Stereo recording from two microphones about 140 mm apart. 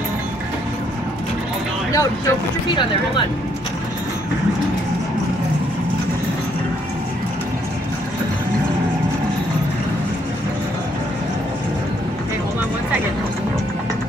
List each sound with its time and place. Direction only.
1.9 s speech: 25° left (ahead or behind)